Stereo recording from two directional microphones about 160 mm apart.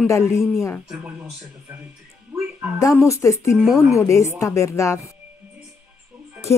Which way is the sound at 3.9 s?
20° left (ahead or behind).